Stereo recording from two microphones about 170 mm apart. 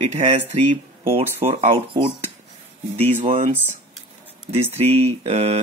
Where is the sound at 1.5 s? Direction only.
35° right (ahead or behind).